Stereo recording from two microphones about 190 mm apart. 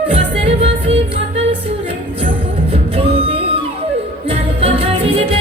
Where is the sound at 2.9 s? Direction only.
30° right (ahead or behind).